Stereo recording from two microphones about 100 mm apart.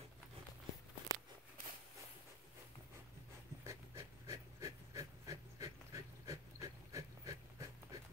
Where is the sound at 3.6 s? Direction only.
30° right (ahead or behind).